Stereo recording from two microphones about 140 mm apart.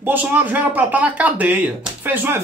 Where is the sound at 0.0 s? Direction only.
15° right (ahead or behind).